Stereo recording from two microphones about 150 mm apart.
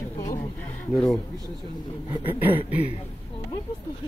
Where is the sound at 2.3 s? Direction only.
15° right (ahead or behind).